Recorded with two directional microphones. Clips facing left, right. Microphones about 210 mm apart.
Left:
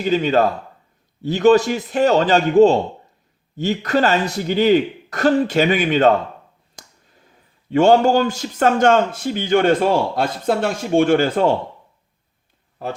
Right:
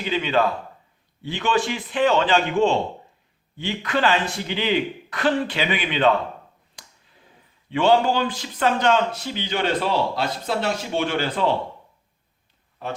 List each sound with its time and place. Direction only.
0.0 s a man's voice: 40° left (ahead or behind)
6.7 s finger snapping: 45° left (ahead or behind)
7.7 s a man's voice: 45° left (ahead or behind)